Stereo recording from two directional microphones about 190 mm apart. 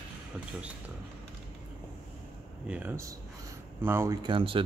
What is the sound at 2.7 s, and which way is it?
Speech, 10° right (ahead or behind).